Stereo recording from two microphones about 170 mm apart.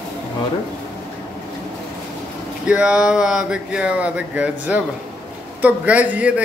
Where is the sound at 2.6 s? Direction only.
5° right (ahead or behind).